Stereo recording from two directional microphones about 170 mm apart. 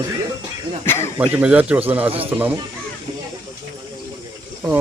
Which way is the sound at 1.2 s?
5° right (ahead or behind).